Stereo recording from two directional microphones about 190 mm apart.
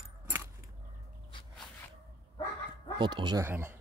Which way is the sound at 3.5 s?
10° right (ahead or behind).